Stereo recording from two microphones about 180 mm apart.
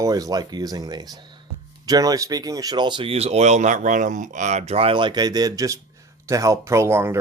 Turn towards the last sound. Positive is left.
turn(degrees=-15)  # may be behind; listen again after turning